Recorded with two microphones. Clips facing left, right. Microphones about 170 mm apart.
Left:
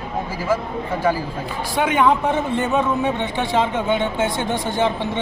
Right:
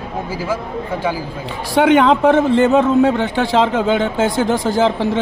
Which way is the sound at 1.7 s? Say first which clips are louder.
Right 6 dB; 80° right.